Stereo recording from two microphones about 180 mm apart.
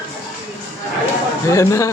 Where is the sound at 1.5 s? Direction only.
15° left (ahead or behind).